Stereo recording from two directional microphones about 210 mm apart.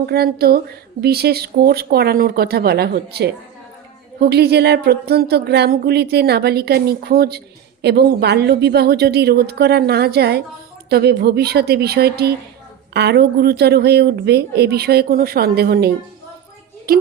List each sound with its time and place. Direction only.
0.0 s speech: 50° right (ahead or behind)
16.9 s speech: 45° right (ahead or behind)